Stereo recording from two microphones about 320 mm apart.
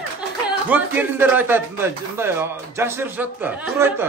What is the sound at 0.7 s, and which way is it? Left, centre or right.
Speech, centre.